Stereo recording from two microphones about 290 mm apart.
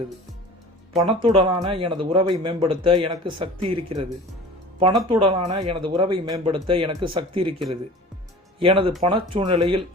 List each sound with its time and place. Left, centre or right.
1.0 s speech: centre
8.5 s speech: centre